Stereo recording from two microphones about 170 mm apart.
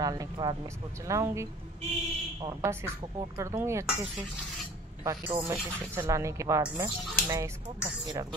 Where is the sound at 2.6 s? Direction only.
15° right (ahead or behind).